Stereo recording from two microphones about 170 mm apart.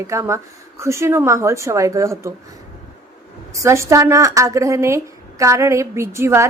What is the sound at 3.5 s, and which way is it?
A woman's voice, 20° right (ahead or behind).